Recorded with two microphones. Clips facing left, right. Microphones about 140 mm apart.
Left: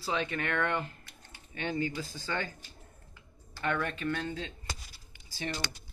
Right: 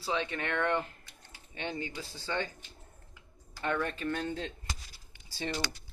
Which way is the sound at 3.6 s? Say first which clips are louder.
Even; 30° right (ahead or behind).